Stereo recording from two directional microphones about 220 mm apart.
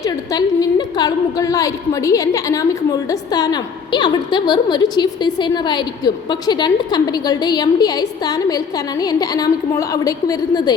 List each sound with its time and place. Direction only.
0.0 s a woman's voice: 15° left (ahead or behind)